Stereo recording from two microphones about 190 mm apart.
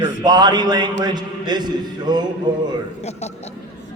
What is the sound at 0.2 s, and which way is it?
A man's voice, 20° right (ahead or behind).